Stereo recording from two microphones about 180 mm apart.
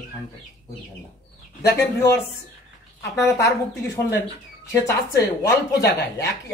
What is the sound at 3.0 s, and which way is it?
Speech, 15° left (ahead or behind).